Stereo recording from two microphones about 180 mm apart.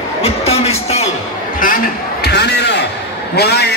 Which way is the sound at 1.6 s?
60° left (ahead or behind).